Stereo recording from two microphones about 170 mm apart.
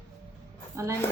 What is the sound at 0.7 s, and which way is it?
Speech, 15° right (ahead or behind).